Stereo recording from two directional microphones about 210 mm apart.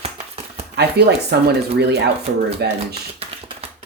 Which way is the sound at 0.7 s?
50° right (ahead or behind).